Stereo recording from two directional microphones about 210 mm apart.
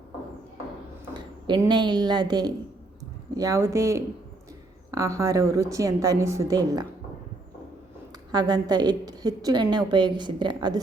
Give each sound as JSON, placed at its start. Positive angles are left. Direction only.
{"t": 1.1, "sound": "a woman's voice", "side_deg": -20}
{"t": 8.3, "sound": "a woman's voice", "side_deg": -20}